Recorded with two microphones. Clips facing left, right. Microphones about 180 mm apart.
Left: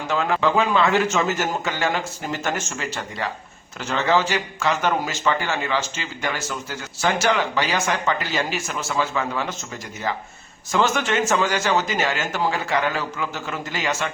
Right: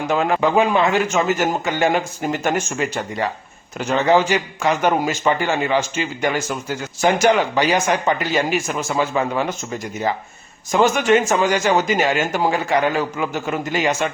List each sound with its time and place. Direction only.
0.1 s a man's voice: 15° right (ahead or behind)
10.7 s a man's voice: 15° right (ahead or behind)